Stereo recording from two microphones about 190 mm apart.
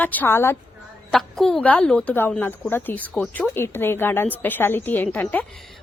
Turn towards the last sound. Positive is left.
turn(degrees=10)  # may be behind; listen again after turning